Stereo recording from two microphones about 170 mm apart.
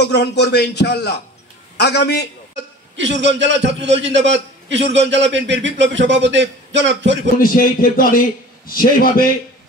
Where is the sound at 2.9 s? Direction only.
90° right.